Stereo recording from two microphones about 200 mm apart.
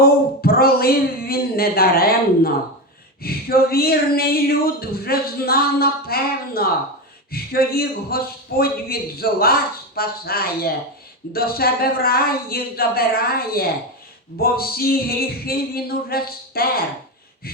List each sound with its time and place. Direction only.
0.0 s speech: 50° left (ahead or behind)